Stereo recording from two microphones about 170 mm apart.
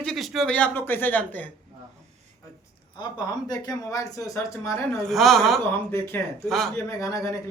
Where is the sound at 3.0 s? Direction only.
25° left (ahead or behind).